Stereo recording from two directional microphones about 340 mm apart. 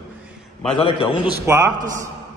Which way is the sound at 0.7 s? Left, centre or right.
Centre.